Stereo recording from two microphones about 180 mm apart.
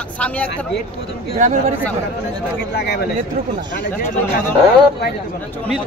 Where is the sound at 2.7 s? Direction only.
60° left (ahead or behind).